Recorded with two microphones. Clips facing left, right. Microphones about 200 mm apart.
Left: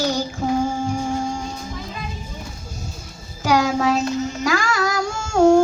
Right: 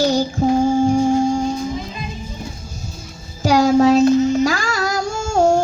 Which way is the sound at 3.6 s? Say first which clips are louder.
Right 8 dB; 35° right (ahead or behind).